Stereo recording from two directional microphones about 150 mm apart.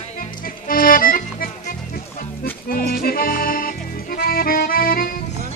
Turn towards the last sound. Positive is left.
turn(degrees=75)  # may be behind; listen again after turning